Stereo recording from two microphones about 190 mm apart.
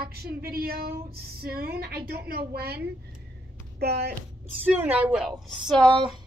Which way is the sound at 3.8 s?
60° right (ahead or behind).